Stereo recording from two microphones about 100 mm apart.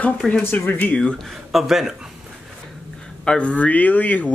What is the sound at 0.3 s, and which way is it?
Speech, 15° left (ahead or behind).